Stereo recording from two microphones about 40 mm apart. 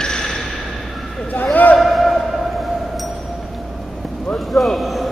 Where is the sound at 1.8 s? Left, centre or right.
Centre.